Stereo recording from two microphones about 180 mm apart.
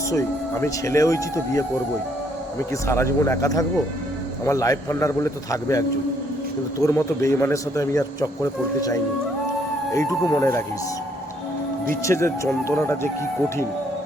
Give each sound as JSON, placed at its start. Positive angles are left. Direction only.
{"t": 0.1, "sound": "speech", "side_deg": 15}
{"t": 2.8, "sound": "speech", "side_deg": 15}
{"t": 9.9, "sound": "speech", "side_deg": 15}
{"t": 11.9, "sound": "speech", "side_deg": 15}